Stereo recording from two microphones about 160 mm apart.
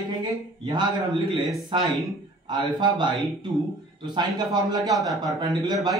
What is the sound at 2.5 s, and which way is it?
Speech, 30° right (ahead or behind).